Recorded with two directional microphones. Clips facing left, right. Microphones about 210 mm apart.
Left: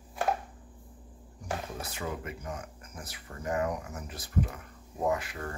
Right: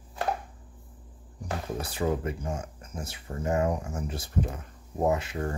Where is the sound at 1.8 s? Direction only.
30° right (ahead or behind).